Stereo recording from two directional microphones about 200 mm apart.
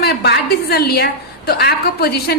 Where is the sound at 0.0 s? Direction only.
55° left (ahead or behind).